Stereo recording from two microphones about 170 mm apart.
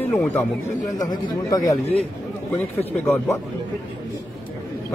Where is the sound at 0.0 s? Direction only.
15° left (ahead or behind).